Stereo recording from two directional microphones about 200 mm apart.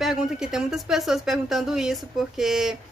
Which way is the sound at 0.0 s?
Centre (ahead or behind).